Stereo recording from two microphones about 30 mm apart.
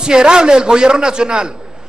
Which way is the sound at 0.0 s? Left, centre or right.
Right.